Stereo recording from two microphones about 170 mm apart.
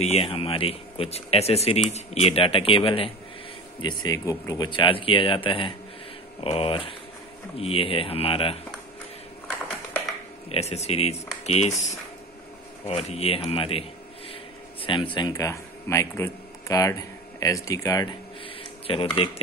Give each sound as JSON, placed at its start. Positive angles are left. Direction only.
{"t": 0.0, "sound": "speech", "side_deg": 35}
{"t": 10.5, "sound": "speech", "side_deg": 40}
{"t": 12.8, "sound": "speech", "side_deg": 35}
{"t": 14.8, "sound": "a sound", "side_deg": 30}
{"t": 15.1, "sound": "speech", "side_deg": 20}
{"t": 18.6, "sound": "speech", "side_deg": 30}